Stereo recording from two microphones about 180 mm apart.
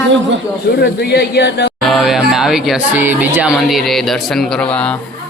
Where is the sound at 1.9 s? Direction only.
Centre (ahead or behind).